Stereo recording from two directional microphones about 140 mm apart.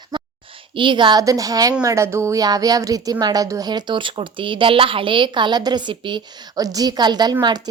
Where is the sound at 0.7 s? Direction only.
35° right (ahead or behind).